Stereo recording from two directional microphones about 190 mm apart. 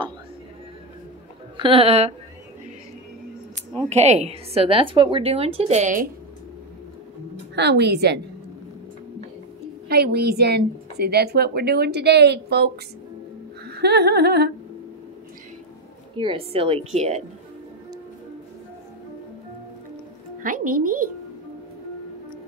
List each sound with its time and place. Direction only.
1.6 s a woman's voice: 30° right (ahead or behind)
3.9 s a woman's voice: 35° right (ahead or behind)
7.5 s speech: 60° right (ahead or behind)
9.8 s speech: 55° right (ahead or behind)
13.7 s humming: 60° right (ahead or behind)
16.2 s a woman's voice: 25° right (ahead or behind)
20.4 s a woman's voice: 45° right (ahead or behind)